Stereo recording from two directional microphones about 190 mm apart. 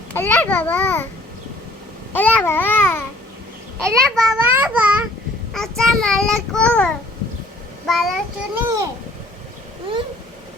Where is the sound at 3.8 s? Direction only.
5° left (ahead or behind).